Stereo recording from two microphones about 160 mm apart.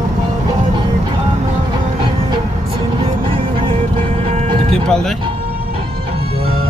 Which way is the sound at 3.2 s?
35° right (ahead or behind).